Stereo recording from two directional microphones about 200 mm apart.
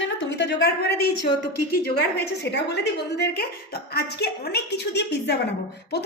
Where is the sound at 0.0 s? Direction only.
65° left (ahead or behind).